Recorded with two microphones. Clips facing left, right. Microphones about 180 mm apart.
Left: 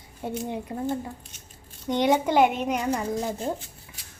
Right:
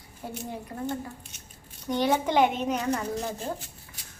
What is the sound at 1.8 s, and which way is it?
Speech, 20° left (ahead or behind).